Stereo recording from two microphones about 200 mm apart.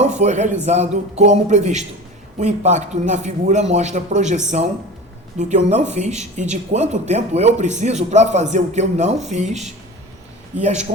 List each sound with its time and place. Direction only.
0.2 s speech: 35° right (ahead or behind)